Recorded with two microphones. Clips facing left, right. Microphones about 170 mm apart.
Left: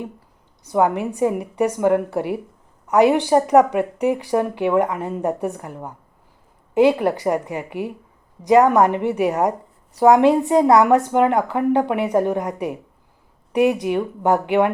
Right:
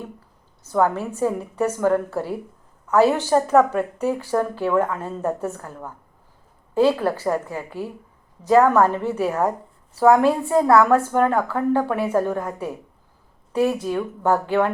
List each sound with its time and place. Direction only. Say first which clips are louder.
0.6 s a woman's voice: left 2 dB; 15° left (ahead or behind)